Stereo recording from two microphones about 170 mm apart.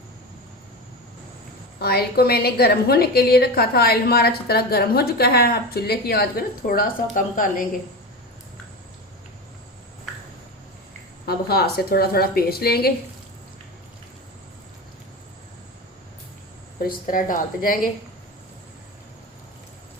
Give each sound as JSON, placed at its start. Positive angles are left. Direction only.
{"t": 1.8, "sound": "a woman's voice", "side_deg": 65}
{"t": 11.3, "sound": "a woman's voice", "side_deg": 65}
{"t": 16.8, "sound": "a woman's voice", "side_deg": 55}